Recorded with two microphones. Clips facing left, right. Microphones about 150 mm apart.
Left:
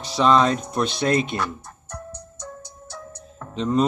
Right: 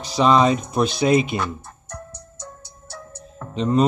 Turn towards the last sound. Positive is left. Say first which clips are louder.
# right 2 dB
turn(degrees=0)  # may be behind; listen again after turning